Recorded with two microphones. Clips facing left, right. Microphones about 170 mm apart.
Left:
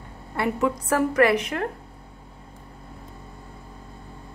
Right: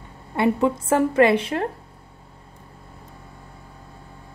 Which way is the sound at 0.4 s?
25° right (ahead or behind).